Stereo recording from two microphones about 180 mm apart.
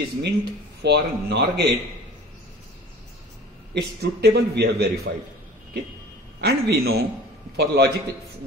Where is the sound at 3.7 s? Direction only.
65° right (ahead or behind).